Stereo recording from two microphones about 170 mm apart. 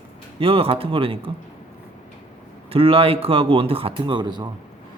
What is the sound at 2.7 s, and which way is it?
A man's voice, 35° right (ahead or behind).